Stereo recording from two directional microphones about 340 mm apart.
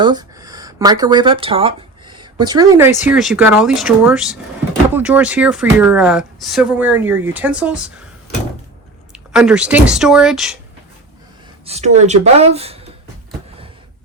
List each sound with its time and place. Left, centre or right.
0.0 s speech: centre
9.1 s speech: centre
11.6 s speech: centre